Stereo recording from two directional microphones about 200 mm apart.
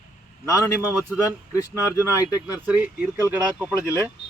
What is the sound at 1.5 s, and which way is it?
Speech, 15° left (ahead or behind).